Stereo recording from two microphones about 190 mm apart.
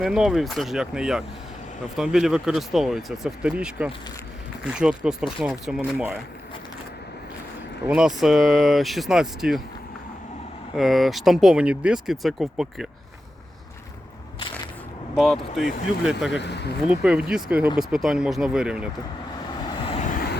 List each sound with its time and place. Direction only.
0.0 s speech: centre (ahead or behind)
7.9 s speech: 5° right (ahead or behind)
10.8 s speech: centre (ahead or behind)
15.1 s speech: centre (ahead or behind)
16.4 s speech: 60° left (ahead or behind)
16.9 s speech: 5° right (ahead or behind)
20.1 s vehicle: 55° left (ahead or behind)